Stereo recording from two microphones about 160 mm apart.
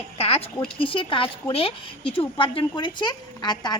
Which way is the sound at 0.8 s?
35° left (ahead or behind).